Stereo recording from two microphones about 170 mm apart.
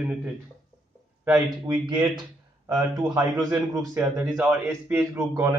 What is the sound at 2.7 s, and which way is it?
A man's voice, 25° right (ahead or behind).